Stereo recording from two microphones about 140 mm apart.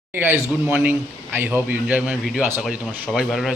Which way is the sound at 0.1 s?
15° right (ahead or behind).